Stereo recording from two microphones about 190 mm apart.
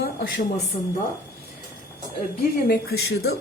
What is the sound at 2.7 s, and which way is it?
Speech, 60° left (ahead or behind).